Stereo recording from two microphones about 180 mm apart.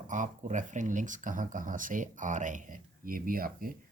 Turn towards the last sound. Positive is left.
turn(degrees=-55)  # may be behind; listen again after turning